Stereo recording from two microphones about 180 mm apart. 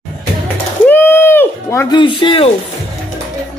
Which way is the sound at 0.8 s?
10° left (ahead or behind).